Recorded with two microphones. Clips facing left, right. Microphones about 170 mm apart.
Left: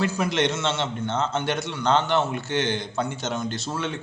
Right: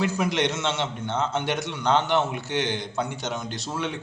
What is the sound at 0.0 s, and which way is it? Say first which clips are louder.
A man's voice: left 1 dB; 15° right (ahead or behind).